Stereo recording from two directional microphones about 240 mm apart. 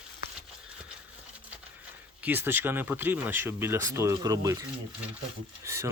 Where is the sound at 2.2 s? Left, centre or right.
Centre.